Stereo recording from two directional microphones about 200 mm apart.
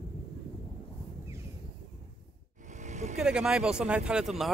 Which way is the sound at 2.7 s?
35° right (ahead or behind).